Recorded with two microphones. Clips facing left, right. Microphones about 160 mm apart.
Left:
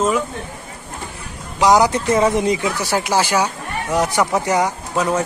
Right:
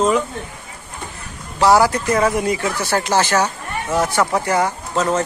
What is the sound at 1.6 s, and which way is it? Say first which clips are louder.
A man's voice: even; 15° left (ahead or behind).